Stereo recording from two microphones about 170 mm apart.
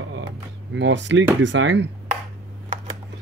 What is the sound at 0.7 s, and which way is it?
Speech, 90° right.